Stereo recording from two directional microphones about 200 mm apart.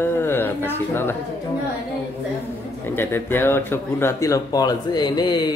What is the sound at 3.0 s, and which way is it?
A man's voice, 10° left (ahead or behind).